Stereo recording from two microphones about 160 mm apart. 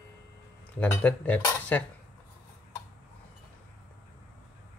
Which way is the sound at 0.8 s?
10° left (ahead or behind).